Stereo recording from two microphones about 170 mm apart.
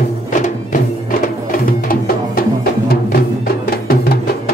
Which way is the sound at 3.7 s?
65° left (ahead or behind).